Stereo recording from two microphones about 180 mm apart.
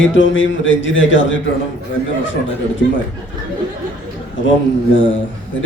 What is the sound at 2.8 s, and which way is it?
Speech, 75° left (ahead or behind).